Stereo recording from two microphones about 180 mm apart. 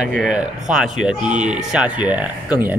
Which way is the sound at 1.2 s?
40° right (ahead or behind).